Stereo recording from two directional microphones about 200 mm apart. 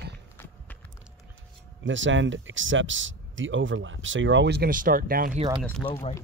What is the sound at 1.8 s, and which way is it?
Speech, 70° right (ahead or behind).